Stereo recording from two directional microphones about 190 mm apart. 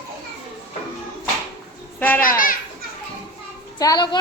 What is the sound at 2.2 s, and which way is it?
Speech, 45° left (ahead or behind).